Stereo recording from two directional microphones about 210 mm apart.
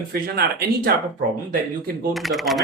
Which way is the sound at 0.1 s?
45° right (ahead or behind).